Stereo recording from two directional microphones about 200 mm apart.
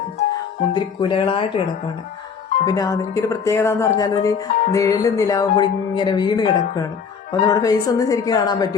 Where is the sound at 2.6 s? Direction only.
20° left (ahead or behind).